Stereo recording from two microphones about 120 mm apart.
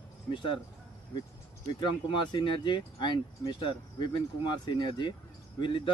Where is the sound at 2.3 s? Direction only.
40° left (ahead or behind).